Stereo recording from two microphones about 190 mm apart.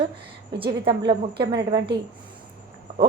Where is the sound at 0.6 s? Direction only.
25° right (ahead or behind).